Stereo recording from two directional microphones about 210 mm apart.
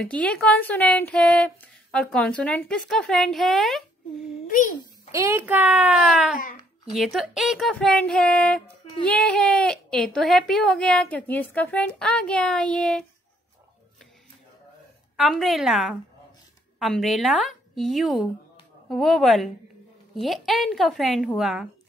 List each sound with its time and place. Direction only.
0.0 s a woman's voice: 5° left (ahead or behind)
4.5 s a child's voice: 40° left (ahead or behind)
5.1 s a child's voice: 10° right (ahead or behind); by 13.0 s 5° left (ahead or behind)
15.1 s a woman's voice: centre (ahead or behind)